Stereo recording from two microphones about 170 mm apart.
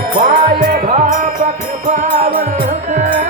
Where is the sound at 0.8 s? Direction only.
45° right (ahead or behind).